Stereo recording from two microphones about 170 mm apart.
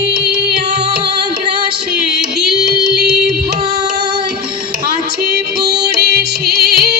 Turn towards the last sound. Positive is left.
turn(degrees=-65)  # may be behind; listen again after turning